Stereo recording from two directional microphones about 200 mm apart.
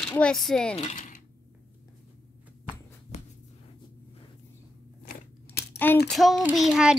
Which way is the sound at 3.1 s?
35° left (ahead or behind).